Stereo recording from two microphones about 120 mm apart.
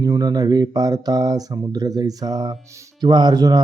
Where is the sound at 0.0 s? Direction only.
35° right (ahead or behind).